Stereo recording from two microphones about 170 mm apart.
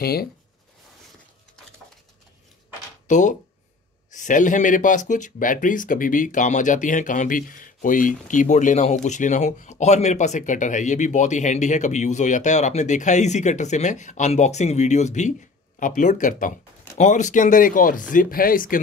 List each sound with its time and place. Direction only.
0.0 s speech: 65° left (ahead or behind)
3.1 s speech: 45° left (ahead or behind)